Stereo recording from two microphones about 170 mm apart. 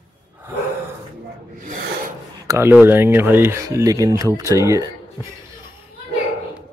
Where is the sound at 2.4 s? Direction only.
15° right (ahead or behind).